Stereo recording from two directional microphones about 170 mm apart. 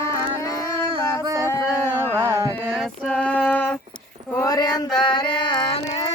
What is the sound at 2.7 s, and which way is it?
Female singing, 5° left (ahead or behind).